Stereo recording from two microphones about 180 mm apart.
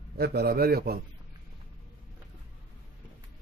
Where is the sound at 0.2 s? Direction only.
60° right (ahead or behind).